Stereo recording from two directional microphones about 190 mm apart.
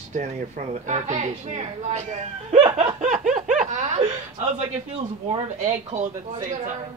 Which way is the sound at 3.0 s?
40° right (ahead or behind).